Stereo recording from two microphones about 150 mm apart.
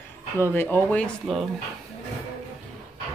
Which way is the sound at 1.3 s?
Centre (ahead or behind).